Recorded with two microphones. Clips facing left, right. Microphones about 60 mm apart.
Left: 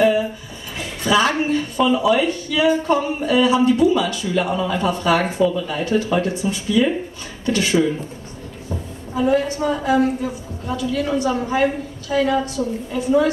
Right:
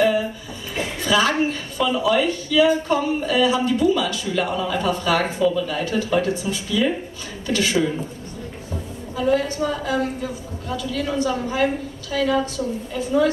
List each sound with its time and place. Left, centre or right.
1.0 s a woman's voice: centre
9.1 s a woman's voice: centre